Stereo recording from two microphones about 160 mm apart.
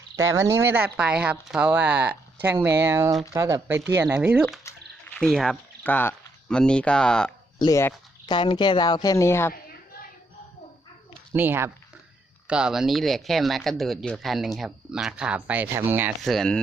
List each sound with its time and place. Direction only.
0.2 s speech: 20° right (ahead or behind)
4.7 s a sound: 15° left (ahead or behind)
5.2 s speech: 5° left (ahead or behind)
7.6 s speech: 20° left (ahead or behind)
8.4 s a woman's voice: 30° left (ahead or behind)
11.3 s speech: 15° right (ahead or behind)
16.2 s speech: centre (ahead or behind)